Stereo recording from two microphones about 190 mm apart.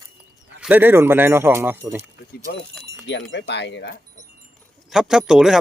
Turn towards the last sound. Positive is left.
turn(degrees=-5)  # may be behind; listen again after turning